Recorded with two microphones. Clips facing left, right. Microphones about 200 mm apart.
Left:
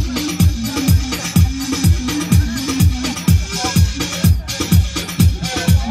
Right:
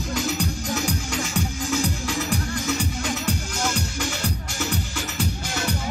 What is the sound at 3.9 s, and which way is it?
Music, 85° left.